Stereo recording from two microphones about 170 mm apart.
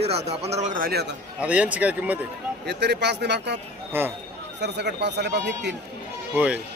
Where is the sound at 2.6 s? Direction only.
85° right.